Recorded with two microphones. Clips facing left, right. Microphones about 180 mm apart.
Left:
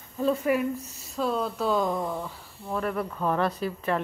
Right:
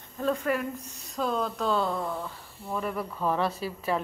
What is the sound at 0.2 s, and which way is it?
Speech, 5° left (ahead or behind).